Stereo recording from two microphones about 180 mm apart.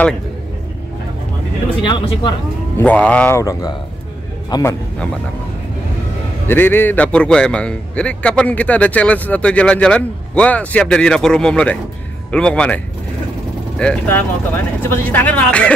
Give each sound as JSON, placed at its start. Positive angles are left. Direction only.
{"t": 1.8, "sound": "speech", "side_deg": 25}
{"t": 2.8, "sound": "a man's voice", "side_deg": 5}
{"t": 6.4, "sound": "a man's voice", "side_deg": 10}